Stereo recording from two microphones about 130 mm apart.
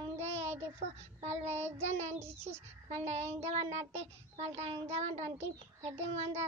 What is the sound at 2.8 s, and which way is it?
A child's voice, 60° right (ahead or behind).